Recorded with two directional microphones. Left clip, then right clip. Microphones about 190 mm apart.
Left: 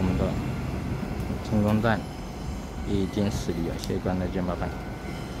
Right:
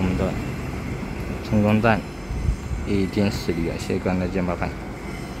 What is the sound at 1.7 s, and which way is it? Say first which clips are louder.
Speech: right 6 dB; 15° right (ahead or behind).